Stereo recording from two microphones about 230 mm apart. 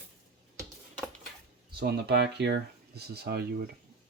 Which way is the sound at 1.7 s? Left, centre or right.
Right.